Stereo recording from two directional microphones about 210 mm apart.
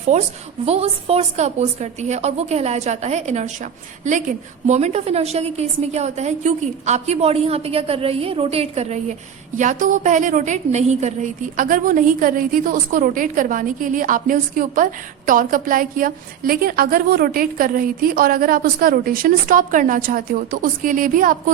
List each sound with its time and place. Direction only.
0.1 s a woman's voice: 35° right (ahead or behind)